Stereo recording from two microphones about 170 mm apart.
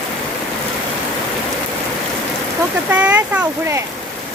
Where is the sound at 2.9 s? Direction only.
10° right (ahead or behind).